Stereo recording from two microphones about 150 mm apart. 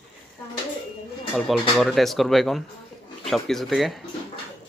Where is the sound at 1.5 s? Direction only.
Centre (ahead or behind).